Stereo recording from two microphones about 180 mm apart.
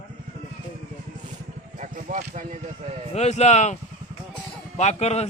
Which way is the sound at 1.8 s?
45° right (ahead or behind).